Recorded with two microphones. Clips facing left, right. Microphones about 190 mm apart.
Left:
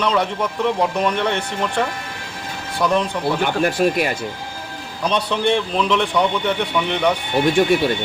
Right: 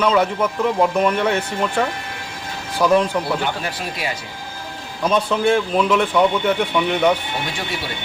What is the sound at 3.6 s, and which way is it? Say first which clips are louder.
Speech: left 9 dB; 55° left (ahead or behind).